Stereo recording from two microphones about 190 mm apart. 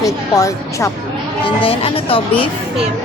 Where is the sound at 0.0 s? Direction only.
15° left (ahead or behind).